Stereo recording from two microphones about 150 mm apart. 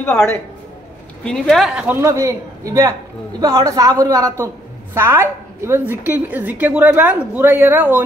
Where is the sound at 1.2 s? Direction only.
5° left (ahead or behind).